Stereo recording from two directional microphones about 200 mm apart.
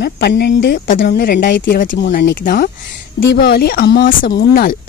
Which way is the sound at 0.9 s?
45° left (ahead or behind).